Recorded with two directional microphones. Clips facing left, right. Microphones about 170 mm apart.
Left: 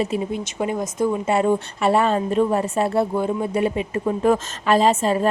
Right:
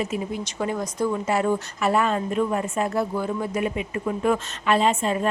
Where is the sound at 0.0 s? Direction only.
30° left (ahead or behind).